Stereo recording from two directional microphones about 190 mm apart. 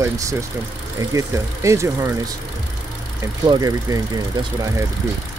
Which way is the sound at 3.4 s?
20° right (ahead or behind).